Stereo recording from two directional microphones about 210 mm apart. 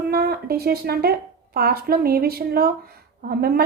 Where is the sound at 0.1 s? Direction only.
45° right (ahead or behind).